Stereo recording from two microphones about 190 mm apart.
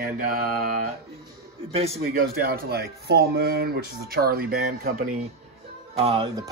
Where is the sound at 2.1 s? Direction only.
50° right (ahead or behind).